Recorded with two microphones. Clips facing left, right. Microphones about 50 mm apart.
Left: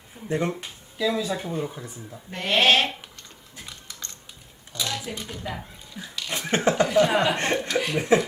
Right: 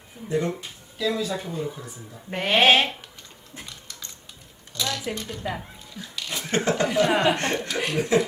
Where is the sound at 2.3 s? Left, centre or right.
Right.